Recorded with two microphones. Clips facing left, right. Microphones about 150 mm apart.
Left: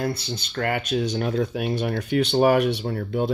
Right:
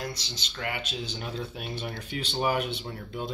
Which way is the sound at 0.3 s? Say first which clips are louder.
Left 9 dB; 55° left (ahead or behind).